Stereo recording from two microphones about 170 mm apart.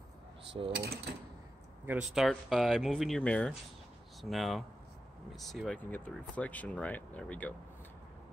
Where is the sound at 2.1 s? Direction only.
Centre (ahead or behind).